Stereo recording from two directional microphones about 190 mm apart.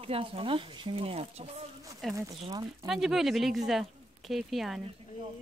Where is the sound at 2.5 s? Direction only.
20° right (ahead or behind).